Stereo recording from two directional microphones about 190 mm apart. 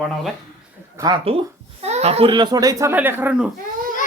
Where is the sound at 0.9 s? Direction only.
20° right (ahead or behind); by 3.5 s 5° right (ahead or behind).